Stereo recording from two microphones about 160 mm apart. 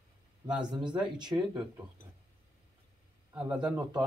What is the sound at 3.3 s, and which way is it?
Speech, 5° right (ahead or behind).